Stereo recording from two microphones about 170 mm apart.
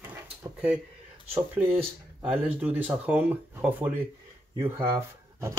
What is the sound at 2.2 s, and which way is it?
Speech, 5° right (ahead or behind).